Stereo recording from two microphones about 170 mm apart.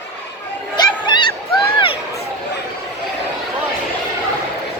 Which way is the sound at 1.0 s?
25° left (ahead or behind).